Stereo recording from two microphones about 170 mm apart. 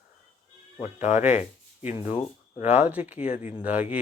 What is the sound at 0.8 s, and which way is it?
Speech, 45° left (ahead or behind).